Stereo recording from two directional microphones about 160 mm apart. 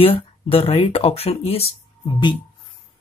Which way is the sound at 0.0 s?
35° left (ahead or behind).